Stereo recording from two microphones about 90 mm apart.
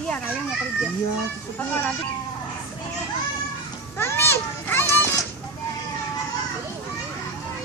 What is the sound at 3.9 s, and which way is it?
Children playing, 25° left (ahead or behind).